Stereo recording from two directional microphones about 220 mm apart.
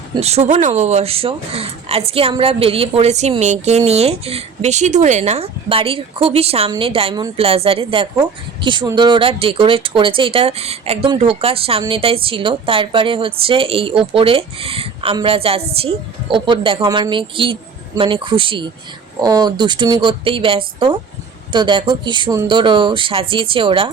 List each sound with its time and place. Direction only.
0.1 s speech: 30° right (ahead or behind)